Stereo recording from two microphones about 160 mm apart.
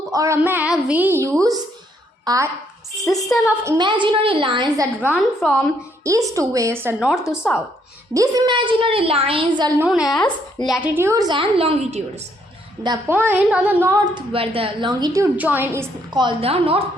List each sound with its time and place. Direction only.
0.1 s a woman's voice: 20° right (ahead or behind)
3.0 s a woman's voice: centre (ahead or behind)
3.8 s a woman's voice: 30° right (ahead or behind)
4.9 s a woman's voice: 10° left (ahead or behind)
6.0 s a woman's voice: 20° right (ahead or behind)
7.4 s a woman's voice: centre (ahead or behind)
8.1 s a woman's voice: 25° right (ahead or behind)
9.8 s speech: 5° right (ahead or behind); by 12.2 s 45° right (ahead or behind)
13.1 s speech: 10° right (ahead or behind)
14.0 s a woman's voice: 30° right (ahead or behind)
15.4 s speech: 10° right (ahead or behind)
16.1 s a woman's voice: 35° right (ahead or behind)